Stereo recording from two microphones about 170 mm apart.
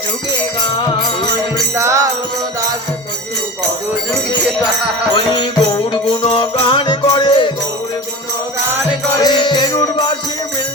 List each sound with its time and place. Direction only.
1.7 s music: 15° right (ahead or behind)
5.1 s music: 25° left (ahead or behind)
9.1 s music: 25° left (ahead or behind)